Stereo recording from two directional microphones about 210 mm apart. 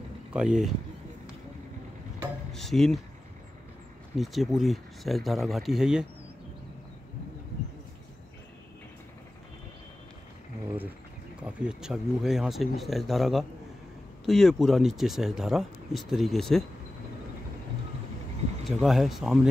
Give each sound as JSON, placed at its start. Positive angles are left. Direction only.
{"t": 0.3, "sound": "speech", "side_deg": -5}
{"t": 2.5, "sound": "speech", "side_deg": 0}
{"t": 4.2, "sound": "speech", "side_deg": 0}
{"t": 11.4, "sound": "speech", "side_deg": -5}
{"t": 18.7, "sound": "speech", "side_deg": 0}